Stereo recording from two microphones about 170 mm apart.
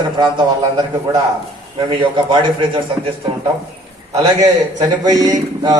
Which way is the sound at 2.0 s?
30° right (ahead or behind).